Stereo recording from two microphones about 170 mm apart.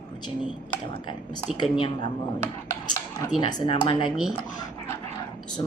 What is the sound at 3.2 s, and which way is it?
Beatboxing, 25° left (ahead or behind).